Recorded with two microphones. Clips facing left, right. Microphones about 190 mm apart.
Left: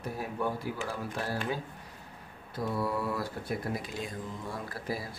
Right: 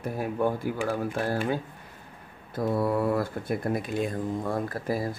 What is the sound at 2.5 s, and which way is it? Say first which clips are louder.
Speech: right 6 dB; 50° right (ahead or behind).